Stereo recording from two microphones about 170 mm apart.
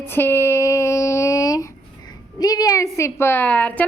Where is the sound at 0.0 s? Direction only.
15° left (ahead or behind).